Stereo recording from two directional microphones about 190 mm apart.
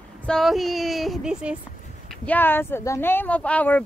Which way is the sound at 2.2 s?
10° left (ahead or behind).